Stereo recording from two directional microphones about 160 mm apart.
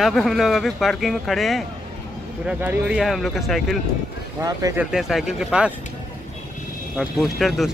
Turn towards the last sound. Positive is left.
turn(degrees=0)  # may be behind; listen again after turning